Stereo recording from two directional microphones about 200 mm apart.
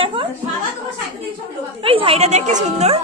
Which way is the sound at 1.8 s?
25° right (ahead or behind).